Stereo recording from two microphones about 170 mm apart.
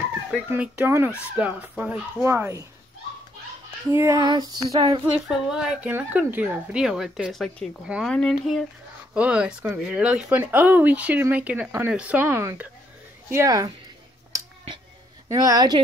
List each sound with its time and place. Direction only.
0.3 s speech: 10° right (ahead or behind)
3.9 s speech: 15° right (ahead or behind)
4.2 s child singing: 25° right (ahead or behind)
5.1 s a woman's voice: 5° right (ahead or behind)
14.3 s a sound: 20° right (ahead or behind)
15.2 s child singing: 20° right (ahead or behind)